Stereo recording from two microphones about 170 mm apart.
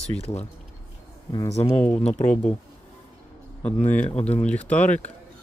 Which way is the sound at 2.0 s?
45° left (ahead or behind).